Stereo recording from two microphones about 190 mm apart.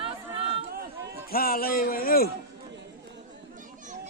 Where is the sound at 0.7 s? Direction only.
55° right (ahead or behind).